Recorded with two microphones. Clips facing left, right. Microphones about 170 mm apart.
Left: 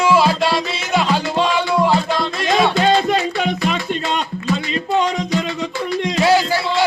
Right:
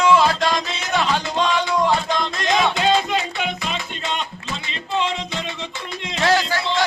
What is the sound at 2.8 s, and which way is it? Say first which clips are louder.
Music: left 4 dB; 45° left (ahead or behind).